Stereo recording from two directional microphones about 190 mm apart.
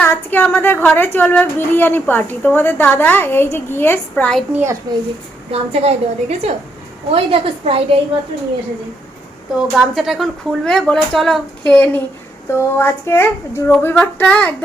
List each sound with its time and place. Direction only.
0.0 s a woman's voice: 10° left (ahead or behind)
4.5 s a child's voice: 15° right (ahead or behind)
5.5 s a woman's voice: 35° right (ahead or behind)
9.6 s a woman's voice: centre (ahead or behind)